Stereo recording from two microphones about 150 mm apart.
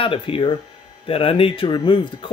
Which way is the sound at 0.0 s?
35° left (ahead or behind).